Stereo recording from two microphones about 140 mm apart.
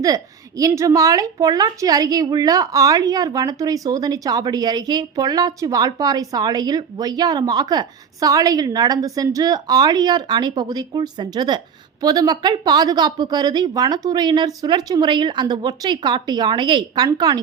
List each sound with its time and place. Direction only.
0.0 s a woman's voice: 25° right (ahead or behind)